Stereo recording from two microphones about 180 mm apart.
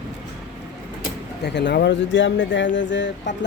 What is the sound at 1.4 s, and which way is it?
Speech, 70° left (ahead or behind).